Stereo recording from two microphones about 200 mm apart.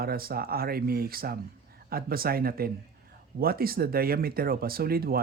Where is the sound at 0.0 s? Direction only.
50° right (ahead or behind).